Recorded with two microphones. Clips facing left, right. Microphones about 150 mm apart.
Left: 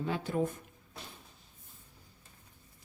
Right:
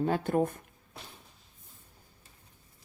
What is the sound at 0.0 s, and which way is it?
Speech, 50° right (ahead or behind).